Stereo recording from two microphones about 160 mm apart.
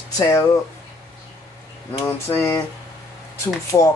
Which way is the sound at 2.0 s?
15° left (ahead or behind).